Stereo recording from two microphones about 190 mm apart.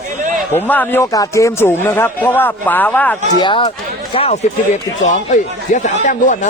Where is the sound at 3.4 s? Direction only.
25° left (ahead or behind).